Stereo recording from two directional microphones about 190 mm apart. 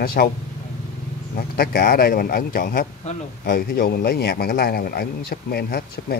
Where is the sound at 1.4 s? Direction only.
55° left (ahead or behind).